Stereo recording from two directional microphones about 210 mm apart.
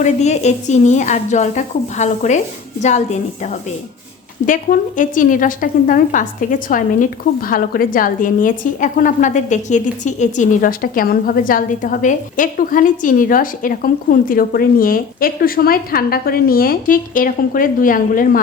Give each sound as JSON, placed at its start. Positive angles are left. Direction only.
{"t": 0.0, "sound": "a woman's voice", "side_deg": 35}